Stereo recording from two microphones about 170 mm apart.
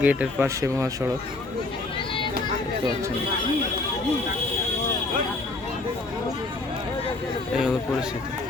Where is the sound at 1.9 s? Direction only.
30° left (ahead or behind).